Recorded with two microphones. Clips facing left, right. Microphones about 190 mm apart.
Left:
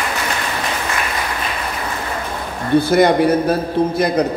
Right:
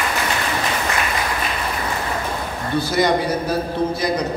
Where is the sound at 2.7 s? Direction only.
55° left (ahead or behind).